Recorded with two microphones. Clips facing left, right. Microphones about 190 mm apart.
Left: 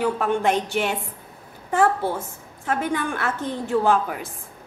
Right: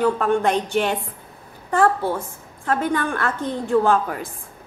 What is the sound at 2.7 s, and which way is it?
A woman's voice, 10° left (ahead or behind).